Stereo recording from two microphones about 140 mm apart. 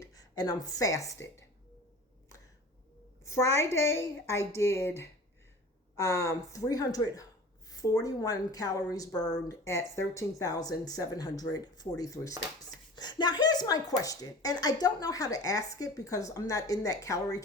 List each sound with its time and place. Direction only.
0.0 s a woman's voice: 30° left (ahead or behind)
3.2 s speech: 20° left (ahead or behind)